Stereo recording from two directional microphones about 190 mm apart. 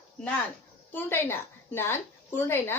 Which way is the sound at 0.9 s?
10° left (ahead or behind).